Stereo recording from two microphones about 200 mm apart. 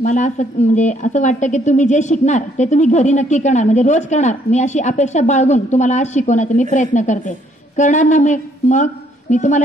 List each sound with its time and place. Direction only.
0.0 s a woman's voice: 35° left (ahead or behind)